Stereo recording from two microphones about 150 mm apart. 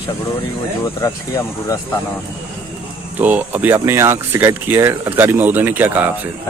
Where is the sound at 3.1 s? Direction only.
10° right (ahead or behind).